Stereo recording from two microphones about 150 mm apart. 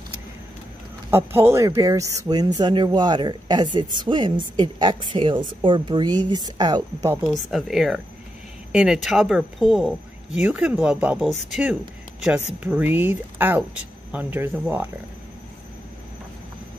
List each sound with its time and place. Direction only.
1.1 s speech: 15° right (ahead or behind)
7.2 s speech: centre (ahead or behind)